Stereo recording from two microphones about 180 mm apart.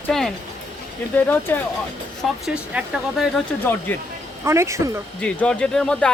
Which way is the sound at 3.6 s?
10° left (ahead or behind).